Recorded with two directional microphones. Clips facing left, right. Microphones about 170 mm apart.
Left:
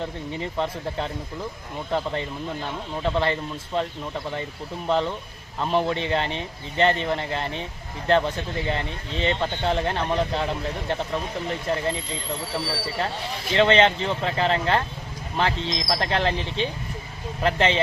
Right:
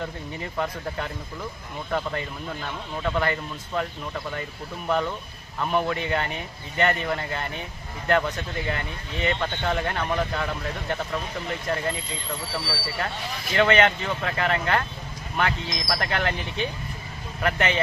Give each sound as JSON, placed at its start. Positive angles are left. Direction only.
{"t": 0.5, "sound": "speech", "side_deg": 25}